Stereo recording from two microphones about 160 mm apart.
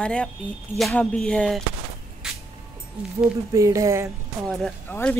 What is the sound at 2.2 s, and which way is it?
Vehicle, 5° right (ahead or behind).